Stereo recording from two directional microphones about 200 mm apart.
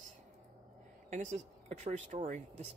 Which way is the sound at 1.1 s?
35° right (ahead or behind).